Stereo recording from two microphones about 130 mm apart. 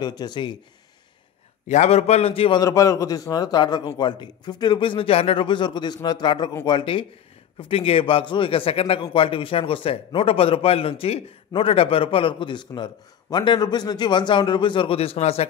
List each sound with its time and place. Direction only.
0.0 s a man's voice: 30° left (ahead or behind)
1.7 s a man's voice: 60° left (ahead or behind)
2.6 s a man's voice: 25° left (ahead or behind); by 15.4 s 50° left (ahead or behind)